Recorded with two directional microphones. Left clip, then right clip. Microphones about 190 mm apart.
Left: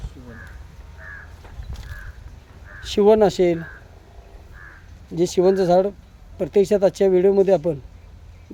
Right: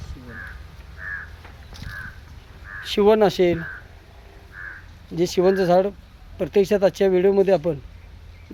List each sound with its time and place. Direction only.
1.0 s crow: 60° left (ahead or behind)
2.8 s speech: 25° left (ahead or behind)
5.1 s speech: 10° left (ahead or behind)